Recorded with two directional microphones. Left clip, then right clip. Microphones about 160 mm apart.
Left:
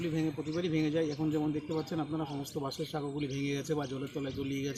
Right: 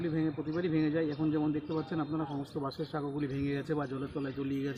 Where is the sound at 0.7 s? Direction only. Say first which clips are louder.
Even; 5° left (ahead or behind).